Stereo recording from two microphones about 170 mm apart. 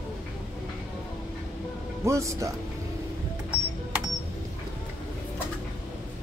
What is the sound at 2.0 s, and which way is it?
Speech, 15° right (ahead or behind).